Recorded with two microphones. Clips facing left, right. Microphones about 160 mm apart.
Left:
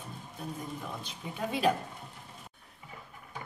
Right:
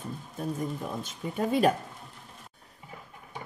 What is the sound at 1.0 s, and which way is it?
Speech, 45° right (ahead or behind).